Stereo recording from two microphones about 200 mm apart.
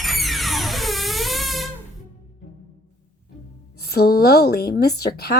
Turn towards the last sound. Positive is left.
turn(degrees=55)  # may be behind; listen again after turning